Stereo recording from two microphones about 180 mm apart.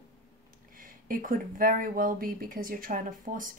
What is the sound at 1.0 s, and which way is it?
A woman's voice, 50° right (ahead or behind).